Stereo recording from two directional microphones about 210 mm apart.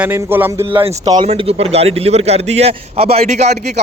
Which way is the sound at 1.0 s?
20° right (ahead or behind).